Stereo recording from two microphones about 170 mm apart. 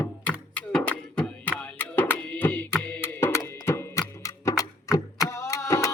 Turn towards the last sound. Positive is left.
turn(degrees=15)  # may be behind; listen again after turning